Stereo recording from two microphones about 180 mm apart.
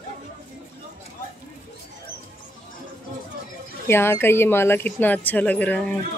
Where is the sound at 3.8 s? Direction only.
15° left (ahead or behind).